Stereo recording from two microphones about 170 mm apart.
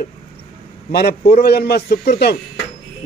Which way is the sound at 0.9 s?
70° left (ahead or behind).